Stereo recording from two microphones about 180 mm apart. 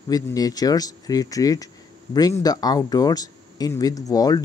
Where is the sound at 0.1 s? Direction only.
20° left (ahead or behind).